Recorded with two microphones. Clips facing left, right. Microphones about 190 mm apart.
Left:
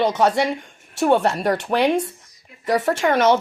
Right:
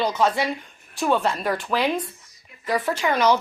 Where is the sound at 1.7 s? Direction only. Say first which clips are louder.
Left 5 dB; 55° left (ahead or behind).